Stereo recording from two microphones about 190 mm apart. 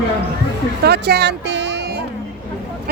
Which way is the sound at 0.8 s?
60° right (ahead or behind).